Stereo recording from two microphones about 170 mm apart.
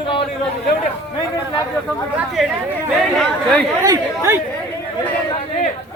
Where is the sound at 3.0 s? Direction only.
5° left (ahead or behind).